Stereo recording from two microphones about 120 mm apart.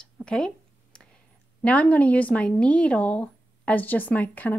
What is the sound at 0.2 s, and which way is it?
Speech, 5° left (ahead or behind).